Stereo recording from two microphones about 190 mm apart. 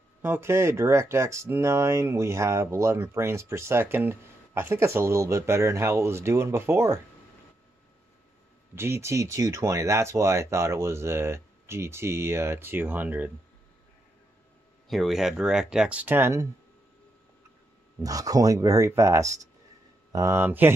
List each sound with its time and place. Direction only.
0.2 s speech: 10° right (ahead or behind)
8.7 s speech: 15° right (ahead or behind)
14.9 s speech: centre (ahead or behind)
18.0 s speech: 20° right (ahead or behind)